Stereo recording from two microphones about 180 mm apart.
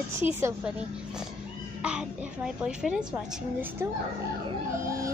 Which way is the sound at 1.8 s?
5° right (ahead or behind).